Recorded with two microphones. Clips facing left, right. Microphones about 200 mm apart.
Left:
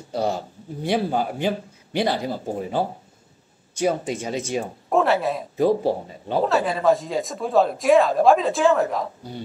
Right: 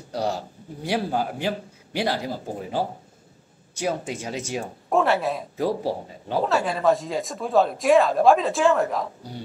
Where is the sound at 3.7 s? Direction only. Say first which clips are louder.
Left 4 dB; 10° right (ahead or behind).